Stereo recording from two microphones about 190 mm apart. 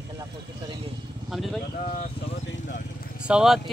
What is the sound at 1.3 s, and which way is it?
Speech, centre (ahead or behind).